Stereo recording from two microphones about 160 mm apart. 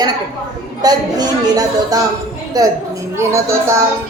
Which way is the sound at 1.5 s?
20° right (ahead or behind).